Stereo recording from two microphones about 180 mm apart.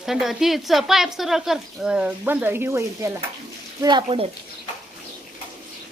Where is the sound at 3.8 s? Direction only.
25° right (ahead or behind).